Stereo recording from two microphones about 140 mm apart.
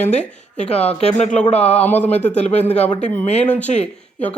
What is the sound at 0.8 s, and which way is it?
Speech, 50° left (ahead or behind).